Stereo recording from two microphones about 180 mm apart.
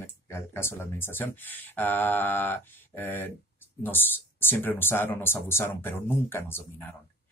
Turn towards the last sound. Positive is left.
turn(degrees=15)  # may be behind; listen again after turning